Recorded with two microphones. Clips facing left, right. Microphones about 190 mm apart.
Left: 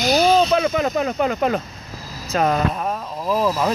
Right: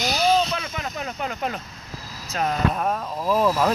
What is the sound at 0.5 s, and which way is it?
Speech, 90° left.